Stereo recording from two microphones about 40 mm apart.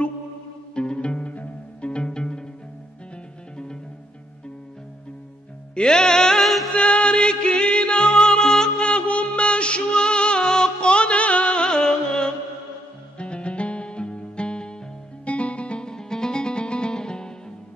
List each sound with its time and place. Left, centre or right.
0.7 s music: left
1.3 s pizzicato: left
1.9 s pizzicato: left
5.8 s music: centre
6.4 s music: centre
6.7 s music: left
8.8 s music: left